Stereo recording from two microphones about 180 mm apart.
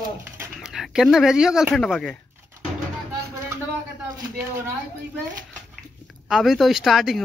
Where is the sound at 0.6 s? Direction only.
5° right (ahead or behind).